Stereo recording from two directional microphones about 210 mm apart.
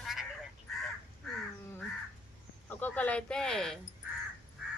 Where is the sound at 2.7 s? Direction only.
5° left (ahead or behind).